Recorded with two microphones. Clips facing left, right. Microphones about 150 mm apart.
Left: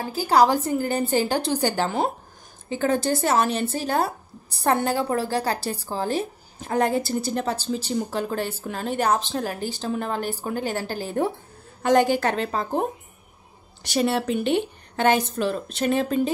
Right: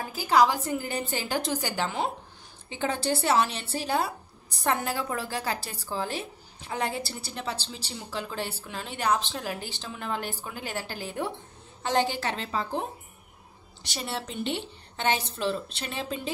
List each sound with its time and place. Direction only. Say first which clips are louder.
0.0 s a woman's voice: left 4 dB; 35° left (ahead or behind)
11.8 s a woman's voice: left 8 dB; 50° left (ahead or behind)
14.0 s a woman's voice: left 8 dB; 65° left (ahead or behind); by 16.3 s 45° left (ahead or behind)